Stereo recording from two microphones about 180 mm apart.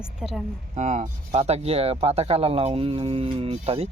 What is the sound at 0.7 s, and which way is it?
Speech, 40° right (ahead or behind).